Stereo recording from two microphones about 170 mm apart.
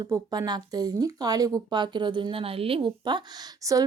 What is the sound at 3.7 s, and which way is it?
Speech, 20° right (ahead or behind).